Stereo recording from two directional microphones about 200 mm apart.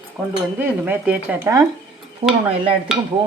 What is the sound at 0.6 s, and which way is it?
Speech, 10° right (ahead or behind).